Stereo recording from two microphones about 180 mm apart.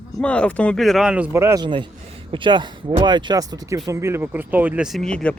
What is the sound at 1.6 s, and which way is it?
A man's voice, 25° right (ahead or behind).